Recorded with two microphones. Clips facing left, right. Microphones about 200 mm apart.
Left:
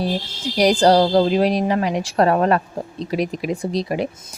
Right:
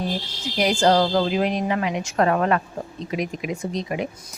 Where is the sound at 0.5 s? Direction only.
35° left (ahead or behind).